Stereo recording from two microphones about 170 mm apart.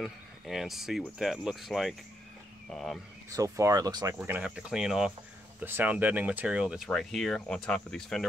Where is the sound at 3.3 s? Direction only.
20° right (ahead or behind); by 8.2 s 5° left (ahead or behind).